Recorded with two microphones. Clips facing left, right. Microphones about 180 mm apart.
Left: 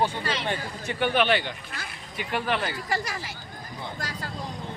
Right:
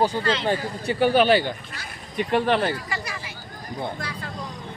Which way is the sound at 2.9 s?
45° left (ahead or behind).